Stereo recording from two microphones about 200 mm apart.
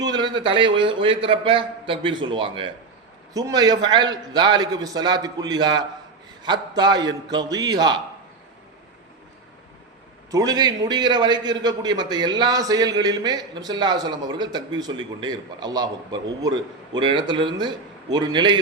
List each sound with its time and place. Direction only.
0.0 s a man's voice: 20° right (ahead or behind)
10.3 s a man's voice: 20° right (ahead or behind)